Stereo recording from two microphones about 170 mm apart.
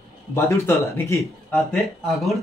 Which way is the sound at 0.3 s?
15° left (ahead or behind).